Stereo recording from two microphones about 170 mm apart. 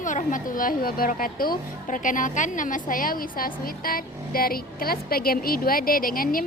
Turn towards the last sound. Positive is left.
turn(degrees=55)  # may be behind; listen again after turning